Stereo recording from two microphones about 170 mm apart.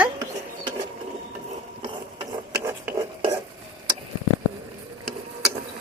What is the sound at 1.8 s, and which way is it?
Ratchet, 25° right (ahead or behind).